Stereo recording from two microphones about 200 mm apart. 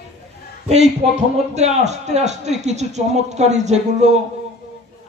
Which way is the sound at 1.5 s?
35° right (ahead or behind).